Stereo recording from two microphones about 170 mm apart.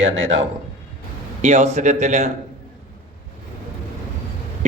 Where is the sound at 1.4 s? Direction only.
40° right (ahead or behind).